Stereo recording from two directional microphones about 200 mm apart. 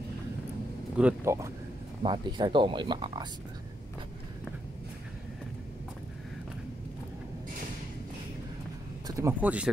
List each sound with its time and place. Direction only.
0.9 s speech: 10° right (ahead or behind)
9.0 s speech: 15° right (ahead or behind)